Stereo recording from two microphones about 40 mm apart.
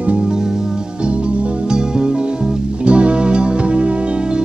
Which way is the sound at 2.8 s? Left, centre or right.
Right.